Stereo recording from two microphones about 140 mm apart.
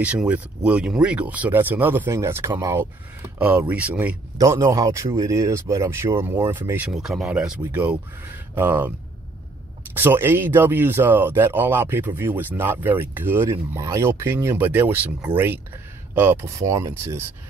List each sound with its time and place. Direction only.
0.0 s speech: 10° right (ahead or behind)
4.4 s speech: 20° right (ahead or behind)
6.9 s speech: centre (ahead or behind)
9.9 s speech: 15° right (ahead or behind)